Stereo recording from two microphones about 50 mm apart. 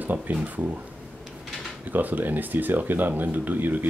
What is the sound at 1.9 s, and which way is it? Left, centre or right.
Speech, right.